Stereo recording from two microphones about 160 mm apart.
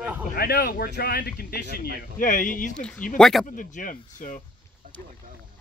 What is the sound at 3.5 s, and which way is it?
Speech, 55° left (ahead or behind).